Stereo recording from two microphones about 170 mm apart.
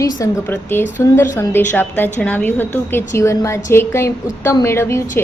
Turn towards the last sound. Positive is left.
turn(degrees=15)  # may be behind; listen again after turning